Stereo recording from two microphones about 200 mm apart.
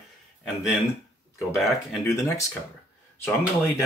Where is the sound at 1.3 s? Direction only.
Centre (ahead or behind).